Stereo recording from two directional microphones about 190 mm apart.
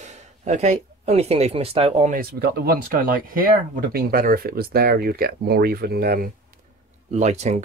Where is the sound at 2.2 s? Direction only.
55° right (ahead or behind).